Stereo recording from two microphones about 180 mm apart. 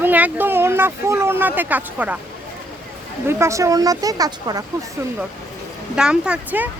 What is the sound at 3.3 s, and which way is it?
Speech, 15° right (ahead or behind).